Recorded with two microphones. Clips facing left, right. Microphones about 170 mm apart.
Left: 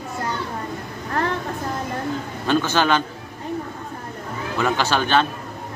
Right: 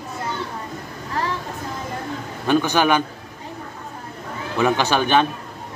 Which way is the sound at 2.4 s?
15° right (ahead or behind).